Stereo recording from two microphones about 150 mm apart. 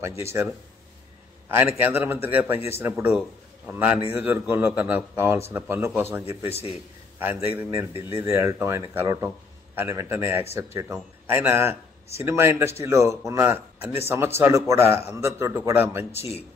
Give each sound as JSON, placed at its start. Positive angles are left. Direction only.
{"t": 1.5, "sound": "a man's voice", "side_deg": -15}
{"t": 6.5, "sound": "a man's voice", "side_deg": 40}
{"t": 7.2, "sound": "a man's voice", "side_deg": -15}
{"t": 16.1, "sound": "speech", "side_deg": 45}